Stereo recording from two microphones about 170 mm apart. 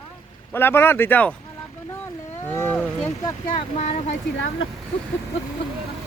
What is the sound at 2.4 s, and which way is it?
Speech, 10° left (ahead or behind).